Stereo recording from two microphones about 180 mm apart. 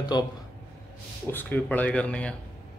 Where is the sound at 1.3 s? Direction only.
10° left (ahead or behind).